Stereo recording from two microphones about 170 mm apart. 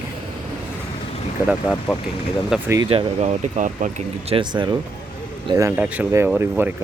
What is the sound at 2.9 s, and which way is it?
Speech, 35° right (ahead or behind).